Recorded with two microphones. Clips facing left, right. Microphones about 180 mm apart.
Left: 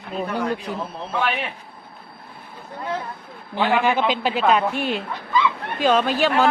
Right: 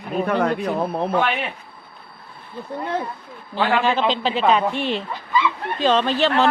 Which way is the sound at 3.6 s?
15° left (ahead or behind).